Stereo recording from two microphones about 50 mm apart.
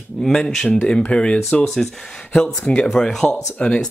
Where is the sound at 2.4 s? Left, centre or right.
Centre.